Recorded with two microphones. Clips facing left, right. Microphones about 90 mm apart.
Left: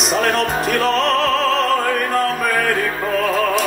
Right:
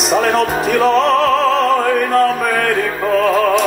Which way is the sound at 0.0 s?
Centre (ahead or behind).